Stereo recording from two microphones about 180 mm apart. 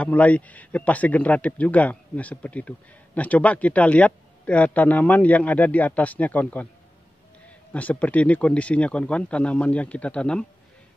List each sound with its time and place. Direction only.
0.0 s speech: 10° left (ahead or behind)
7.7 s speech: 10° left (ahead or behind)